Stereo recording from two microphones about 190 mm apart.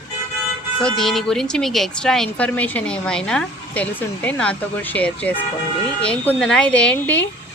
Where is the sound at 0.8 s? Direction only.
5° left (ahead or behind).